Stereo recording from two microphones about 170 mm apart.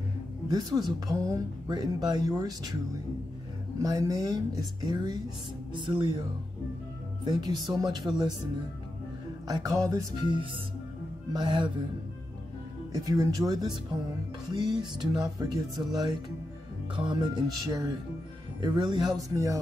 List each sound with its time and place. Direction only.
0.5 s speech: 25° right (ahead or behind)
3.8 s speech: 20° right (ahead or behind)
7.2 s speech: 25° right (ahead or behind)
9.5 s speech: 20° right (ahead or behind)
12.9 s speech: 20° right (ahead or behind)